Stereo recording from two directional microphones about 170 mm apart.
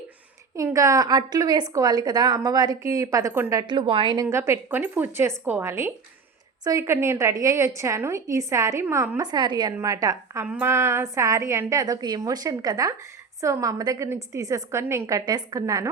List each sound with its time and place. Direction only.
0.5 s a woman's voice: 20° right (ahead or behind)